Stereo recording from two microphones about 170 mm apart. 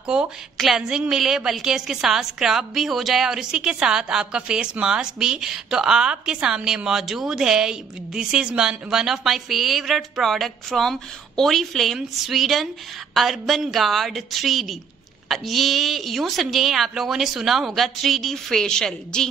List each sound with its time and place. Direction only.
0.0 s a woman's voice: 5° right (ahead or behind)